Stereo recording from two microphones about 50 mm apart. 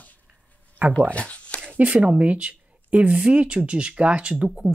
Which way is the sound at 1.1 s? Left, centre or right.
Left.